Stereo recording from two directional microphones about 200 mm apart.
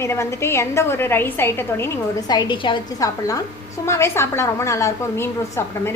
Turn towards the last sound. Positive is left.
turn(degrees=10)  # may be behind; listen again after turning